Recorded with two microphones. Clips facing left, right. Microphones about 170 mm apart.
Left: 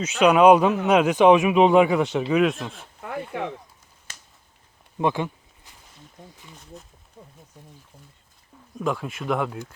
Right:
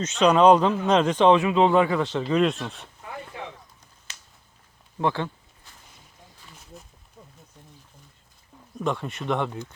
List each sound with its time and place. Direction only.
0.0 s speech: 10° left (ahead or behind)
3.3 s speech: 65° left (ahead or behind)
4.9 s a sound: 15° left (ahead or behind)
8.8 s speech: 5° left (ahead or behind)